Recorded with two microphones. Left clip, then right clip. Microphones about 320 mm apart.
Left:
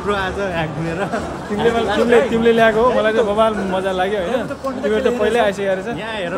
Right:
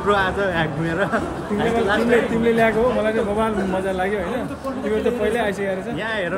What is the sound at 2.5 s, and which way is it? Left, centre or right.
Speech, centre.